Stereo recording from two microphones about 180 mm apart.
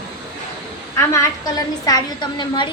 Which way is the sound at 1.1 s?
20° left (ahead or behind).